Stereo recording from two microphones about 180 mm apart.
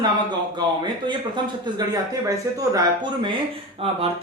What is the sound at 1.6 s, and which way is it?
Speech, 20° right (ahead or behind).